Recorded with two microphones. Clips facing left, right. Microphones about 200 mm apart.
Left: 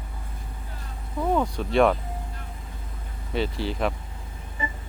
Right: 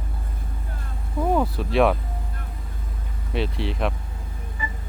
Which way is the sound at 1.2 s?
10° right (ahead or behind).